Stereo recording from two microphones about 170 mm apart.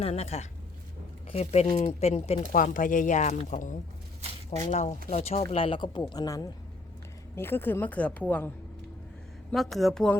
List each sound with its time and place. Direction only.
0.0 s speech: 40° left (ahead or behind)
2.5 s a woman's voice: 50° left (ahead or behind); by 10.2 s 5° left (ahead or behind)